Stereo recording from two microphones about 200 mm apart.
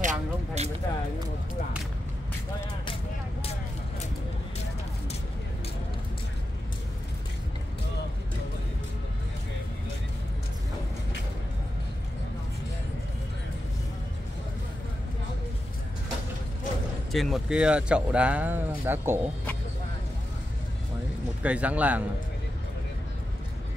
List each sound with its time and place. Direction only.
0.0 s a sound: 40° right (ahead or behind)
17.1 s speech: centre (ahead or behind)
21.4 s speech: 5° right (ahead or behind)